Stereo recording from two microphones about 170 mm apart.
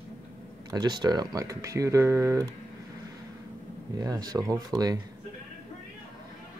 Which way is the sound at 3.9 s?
20° right (ahead or behind).